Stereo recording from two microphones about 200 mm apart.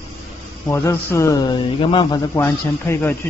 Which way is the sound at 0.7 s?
15° left (ahead or behind).